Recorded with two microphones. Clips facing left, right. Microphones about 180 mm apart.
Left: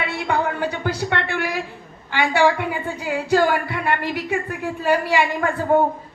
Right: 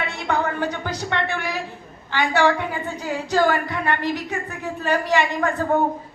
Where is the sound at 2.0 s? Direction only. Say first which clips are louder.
Left 1 dB; 10° left (ahead or behind).